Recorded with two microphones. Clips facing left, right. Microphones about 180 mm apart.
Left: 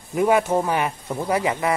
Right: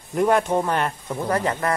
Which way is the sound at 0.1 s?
5° left (ahead or behind).